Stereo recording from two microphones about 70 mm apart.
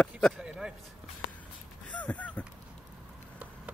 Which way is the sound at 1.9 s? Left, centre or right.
Left.